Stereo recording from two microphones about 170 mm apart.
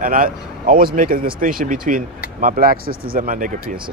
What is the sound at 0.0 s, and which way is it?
Speech, 55° right (ahead or behind).